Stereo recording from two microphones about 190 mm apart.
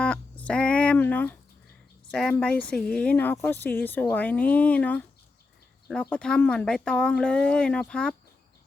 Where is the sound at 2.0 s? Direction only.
5° left (ahead or behind).